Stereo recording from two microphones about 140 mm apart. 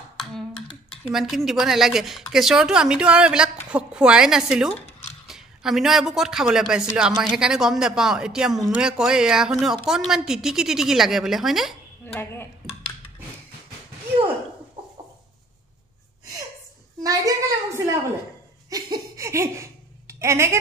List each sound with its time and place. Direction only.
0.2 s finger snapping: 5° left (ahead or behind)
1.1 s speech: centre (ahead or behind)
12.1 s speech: 15° left (ahead or behind)
17.0 s a sound: 25° right (ahead or behind)